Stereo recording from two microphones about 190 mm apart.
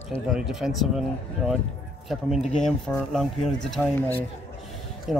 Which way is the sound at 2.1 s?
Centre (ahead or behind).